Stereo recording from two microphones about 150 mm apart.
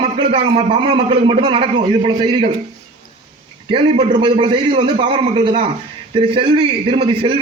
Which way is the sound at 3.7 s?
35° right (ahead or behind).